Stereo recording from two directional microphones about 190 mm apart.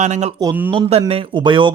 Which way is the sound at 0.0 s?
35° right (ahead or behind).